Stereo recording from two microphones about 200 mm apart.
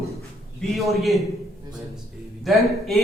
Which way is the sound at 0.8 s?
Centre (ahead or behind).